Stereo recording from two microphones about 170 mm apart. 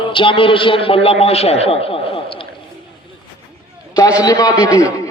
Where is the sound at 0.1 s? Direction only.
30° left (ahead or behind).